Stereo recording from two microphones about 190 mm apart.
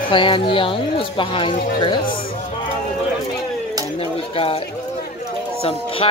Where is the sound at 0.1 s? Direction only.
25° left (ahead or behind).